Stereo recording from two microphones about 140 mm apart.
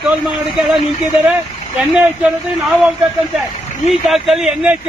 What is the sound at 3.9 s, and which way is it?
Speech, centre (ahead or behind).